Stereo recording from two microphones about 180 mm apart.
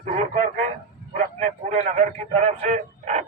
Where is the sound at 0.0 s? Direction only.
45° right (ahead or behind).